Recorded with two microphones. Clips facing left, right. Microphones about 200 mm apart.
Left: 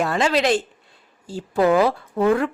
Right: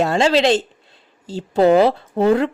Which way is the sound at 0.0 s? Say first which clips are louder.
Right 4 dB; 25° right (ahead or behind).